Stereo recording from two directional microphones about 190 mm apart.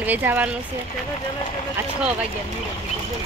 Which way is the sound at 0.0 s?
10° right (ahead or behind).